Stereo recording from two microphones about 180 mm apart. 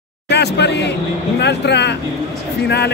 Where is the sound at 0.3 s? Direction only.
70° left (ahead or behind).